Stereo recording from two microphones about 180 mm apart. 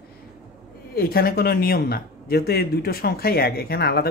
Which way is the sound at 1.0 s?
55° left (ahead or behind).